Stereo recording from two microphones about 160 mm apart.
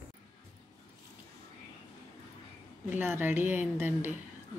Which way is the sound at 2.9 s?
10° right (ahead or behind).